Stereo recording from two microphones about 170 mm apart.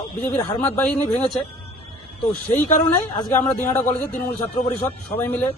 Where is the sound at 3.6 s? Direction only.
10° left (ahead or behind).